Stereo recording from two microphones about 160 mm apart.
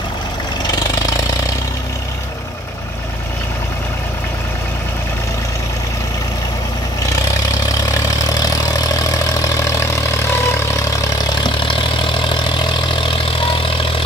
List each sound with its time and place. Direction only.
7.9 s vehicle: 20° left (ahead or behind)
11.4 s vehicle: 30° left (ahead or behind)